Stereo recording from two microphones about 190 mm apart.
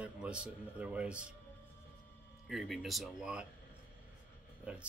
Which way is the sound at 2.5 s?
Centre (ahead or behind).